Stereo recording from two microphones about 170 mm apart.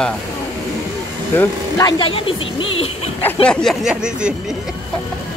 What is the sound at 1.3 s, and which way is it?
Speech, 15° left (ahead or behind).